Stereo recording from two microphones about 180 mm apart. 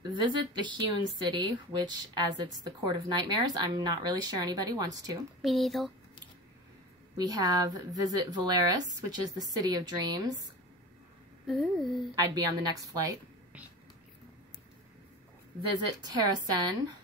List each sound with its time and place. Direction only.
0.1 s speech: 25° right (ahead or behind)
5.4 s speech: centre (ahead or behind)
7.2 s speech: 20° right (ahead or behind)
11.4 s speech: centre (ahead or behind)
12.2 s speech: 20° right (ahead or behind)
16.0 s speech: 20° right (ahead or behind)